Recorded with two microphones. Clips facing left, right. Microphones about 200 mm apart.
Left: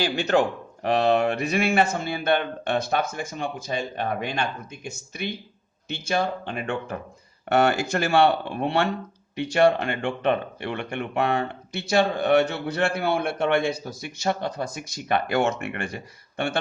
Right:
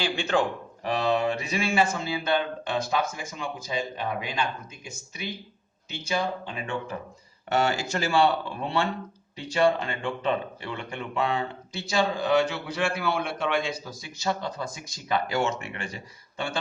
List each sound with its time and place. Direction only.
0.0 s speech: 40° left (ahead or behind)
0.8 s a man's voice: 60° left (ahead or behind)
6.4 s a man's voice: 55° left (ahead or behind)